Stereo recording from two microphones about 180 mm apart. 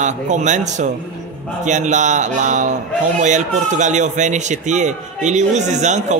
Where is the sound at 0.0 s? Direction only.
40° right (ahead or behind).